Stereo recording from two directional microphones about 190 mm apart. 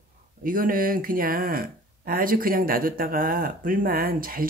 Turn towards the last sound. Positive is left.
turn(degrees=-50)  # may be behind; listen again after turning